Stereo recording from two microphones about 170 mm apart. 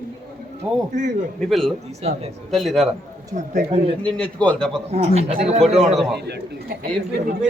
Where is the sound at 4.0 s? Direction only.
5° left (ahead or behind).